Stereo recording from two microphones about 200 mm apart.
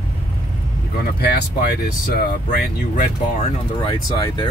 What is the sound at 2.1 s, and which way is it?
Speech, 50° left (ahead or behind).